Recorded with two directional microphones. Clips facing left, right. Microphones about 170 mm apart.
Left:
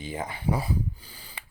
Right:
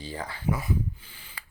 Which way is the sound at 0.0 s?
20° left (ahead or behind).